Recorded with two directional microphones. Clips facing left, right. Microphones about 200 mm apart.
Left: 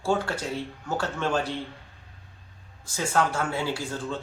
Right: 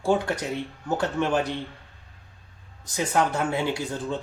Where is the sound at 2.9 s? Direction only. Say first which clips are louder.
Right 2 dB; 20° right (ahead or behind).